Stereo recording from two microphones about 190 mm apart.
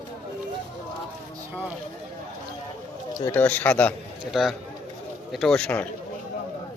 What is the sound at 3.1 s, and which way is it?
Speech, 20° left (ahead or behind).